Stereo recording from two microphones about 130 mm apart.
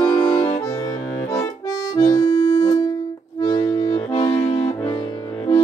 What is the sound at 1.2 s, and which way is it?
Accordion, 25° left (ahead or behind).